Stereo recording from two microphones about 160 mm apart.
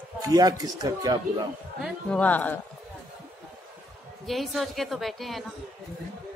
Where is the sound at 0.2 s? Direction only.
25° right (ahead or behind).